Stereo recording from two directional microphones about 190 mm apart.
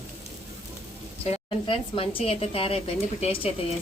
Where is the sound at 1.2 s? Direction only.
30° left (ahead or behind).